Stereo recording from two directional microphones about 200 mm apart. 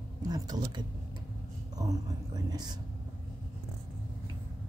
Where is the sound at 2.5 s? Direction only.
20° right (ahead or behind).